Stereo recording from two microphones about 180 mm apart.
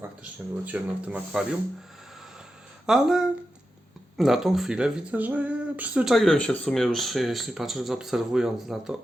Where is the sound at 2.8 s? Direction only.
5° right (ahead or behind).